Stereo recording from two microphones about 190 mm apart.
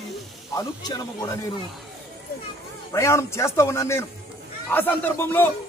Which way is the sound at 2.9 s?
15° left (ahead or behind).